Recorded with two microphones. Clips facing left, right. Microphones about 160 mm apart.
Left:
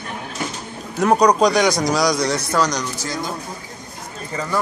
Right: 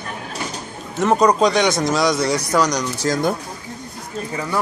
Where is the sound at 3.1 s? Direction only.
55° right (ahead or behind).